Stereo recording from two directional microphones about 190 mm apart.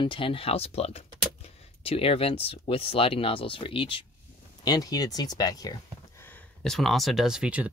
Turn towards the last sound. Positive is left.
turn(degrees=-5)  # may be behind; listen again after turning